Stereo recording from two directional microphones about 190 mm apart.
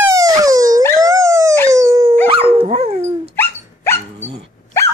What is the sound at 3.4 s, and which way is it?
Dog, 15° left (ahead or behind).